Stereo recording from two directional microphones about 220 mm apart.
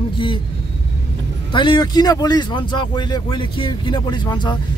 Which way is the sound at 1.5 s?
20° left (ahead or behind).